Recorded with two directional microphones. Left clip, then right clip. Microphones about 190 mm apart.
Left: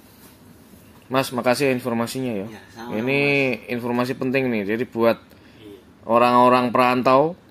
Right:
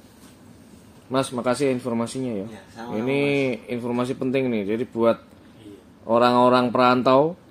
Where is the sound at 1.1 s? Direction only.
10° left (ahead or behind).